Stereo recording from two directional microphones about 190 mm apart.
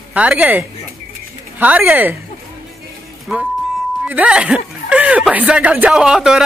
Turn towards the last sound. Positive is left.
turn(degrees=-5)  # may be behind; listen again after turning